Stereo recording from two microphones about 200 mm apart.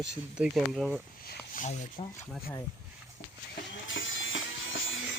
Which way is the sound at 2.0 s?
30° left (ahead or behind).